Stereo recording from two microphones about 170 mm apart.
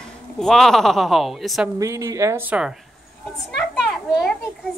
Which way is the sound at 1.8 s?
20° right (ahead or behind).